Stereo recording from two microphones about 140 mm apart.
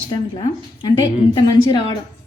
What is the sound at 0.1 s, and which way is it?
A woman's voice, 35° left (ahead or behind).